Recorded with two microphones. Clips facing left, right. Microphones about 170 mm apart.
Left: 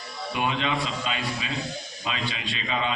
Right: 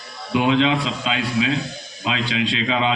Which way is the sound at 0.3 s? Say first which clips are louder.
Right 9 dB; 90° right.